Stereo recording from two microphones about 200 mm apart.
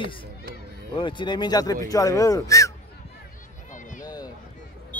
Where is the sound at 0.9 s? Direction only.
25° left (ahead or behind).